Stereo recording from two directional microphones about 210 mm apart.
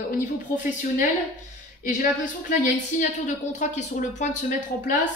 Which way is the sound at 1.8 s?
35° left (ahead or behind).